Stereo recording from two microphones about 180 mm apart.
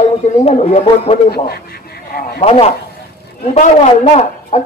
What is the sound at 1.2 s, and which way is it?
Speech, 60° left (ahead or behind).